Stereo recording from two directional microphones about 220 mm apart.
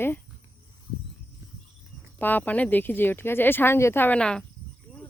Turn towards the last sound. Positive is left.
turn(degrees=5)  # may be behind; listen again after turning